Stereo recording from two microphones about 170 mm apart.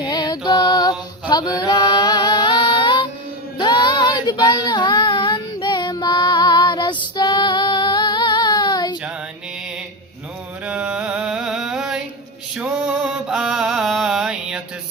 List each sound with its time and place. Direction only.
0.0 s music: 25° left (ahead or behind)
3.6 s child singing: 25° left (ahead or behind)
10.7 s a sound: 5° right (ahead or behind)
12.5 s mantra: 5° right (ahead or behind)